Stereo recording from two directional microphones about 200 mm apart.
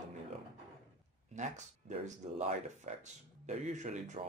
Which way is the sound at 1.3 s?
35° right (ahead or behind).